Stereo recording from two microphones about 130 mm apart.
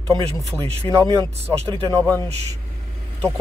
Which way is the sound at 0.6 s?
50° right (ahead or behind).